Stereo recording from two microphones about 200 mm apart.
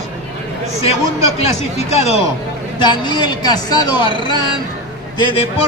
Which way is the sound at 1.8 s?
30° left (ahead or behind).